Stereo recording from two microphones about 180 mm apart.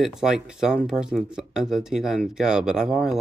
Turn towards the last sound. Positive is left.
turn(degrees=-5)  # may be behind; listen again after turning